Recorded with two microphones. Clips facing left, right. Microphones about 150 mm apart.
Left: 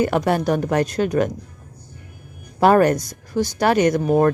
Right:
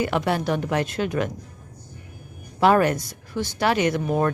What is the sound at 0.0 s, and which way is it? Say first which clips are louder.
Speech: left 4 dB; 45° left (ahead or behind).